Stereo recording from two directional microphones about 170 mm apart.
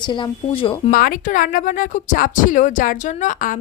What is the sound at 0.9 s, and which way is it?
Speech, 60° left (ahead or behind).